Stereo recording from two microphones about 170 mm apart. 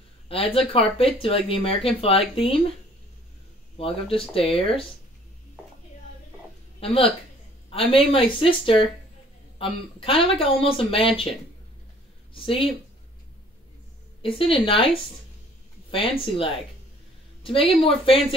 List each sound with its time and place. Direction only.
0.3 s speech: 35° left (ahead or behind)
3.7 s speech: 35° left (ahead or behind)
6.8 s speech: 35° left (ahead or behind)
14.4 s speech: 30° left (ahead or behind)
15.9 s speech: 30° left (ahead or behind)